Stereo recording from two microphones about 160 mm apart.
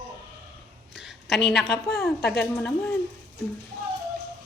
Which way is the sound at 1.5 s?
Centre (ahead or behind).